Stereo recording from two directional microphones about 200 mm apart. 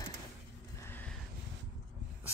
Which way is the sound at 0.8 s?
10° left (ahead or behind).